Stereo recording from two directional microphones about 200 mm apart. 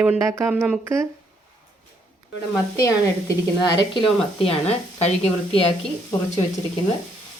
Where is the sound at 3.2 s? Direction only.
20° left (ahead or behind).